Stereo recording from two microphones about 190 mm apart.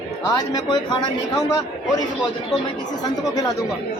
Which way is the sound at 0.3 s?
20° left (ahead or behind).